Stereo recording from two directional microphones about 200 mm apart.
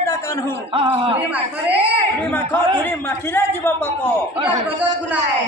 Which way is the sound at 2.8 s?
10° left (ahead or behind).